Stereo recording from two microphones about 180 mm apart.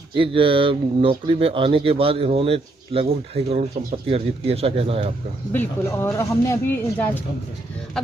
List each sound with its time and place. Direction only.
0.1 s speech: 30° right (ahead or behind)
5.5 s speech: 10° left (ahead or behind)